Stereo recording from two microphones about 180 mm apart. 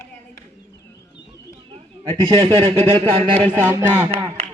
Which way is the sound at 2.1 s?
30° right (ahead or behind).